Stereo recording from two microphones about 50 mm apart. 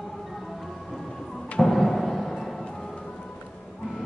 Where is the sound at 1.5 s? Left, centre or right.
Centre.